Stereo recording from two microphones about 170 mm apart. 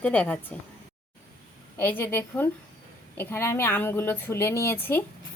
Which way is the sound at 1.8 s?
10° left (ahead or behind).